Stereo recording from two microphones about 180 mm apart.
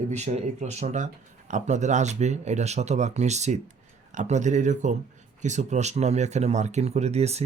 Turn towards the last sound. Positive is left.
turn(degrees=-35)  # may be behind; listen again after turning